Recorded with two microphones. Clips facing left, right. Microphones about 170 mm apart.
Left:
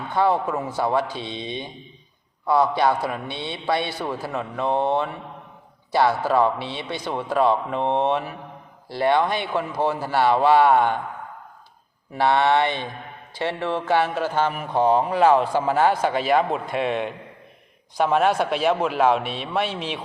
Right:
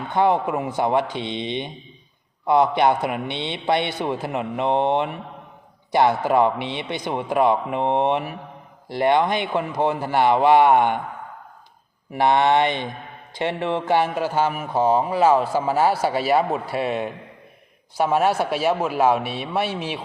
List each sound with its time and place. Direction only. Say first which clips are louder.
0.1 s a man's voice: right 1 dB; 20° right (ahead or behind)
12.1 s speech: right 1 dB; 15° right (ahead or behind)